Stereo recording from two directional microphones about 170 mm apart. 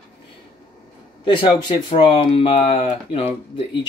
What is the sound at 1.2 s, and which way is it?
Speech, 30° left (ahead or behind).